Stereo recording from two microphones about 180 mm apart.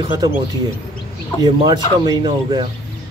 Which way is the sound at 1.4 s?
25° right (ahead or behind).